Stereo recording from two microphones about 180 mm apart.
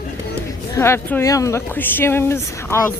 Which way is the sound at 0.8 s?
15° left (ahead or behind).